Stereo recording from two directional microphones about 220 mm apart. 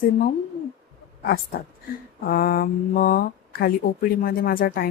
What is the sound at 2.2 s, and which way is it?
Speech, 40° left (ahead or behind).